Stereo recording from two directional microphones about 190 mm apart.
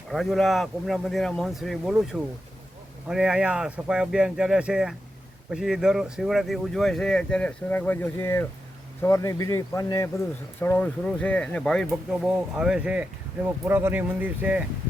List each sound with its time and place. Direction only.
0.1 s speech: centre (ahead or behind)